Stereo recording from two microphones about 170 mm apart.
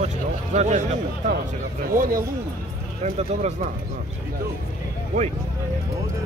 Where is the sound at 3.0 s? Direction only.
40° right (ahead or behind).